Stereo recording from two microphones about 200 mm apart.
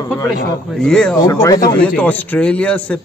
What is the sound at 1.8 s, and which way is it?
A man's voice, 5° left (ahead or behind).